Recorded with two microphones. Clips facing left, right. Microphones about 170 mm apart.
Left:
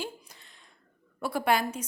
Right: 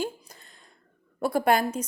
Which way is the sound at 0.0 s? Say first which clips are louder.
Right 6 dB; 45° right (ahead or behind).